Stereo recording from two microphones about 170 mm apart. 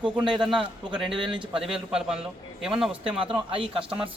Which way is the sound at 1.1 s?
30° right (ahead or behind).